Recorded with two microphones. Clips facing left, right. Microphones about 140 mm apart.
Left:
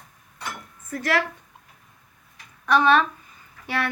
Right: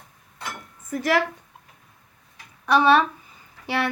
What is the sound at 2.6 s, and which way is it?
Speech, 10° right (ahead or behind).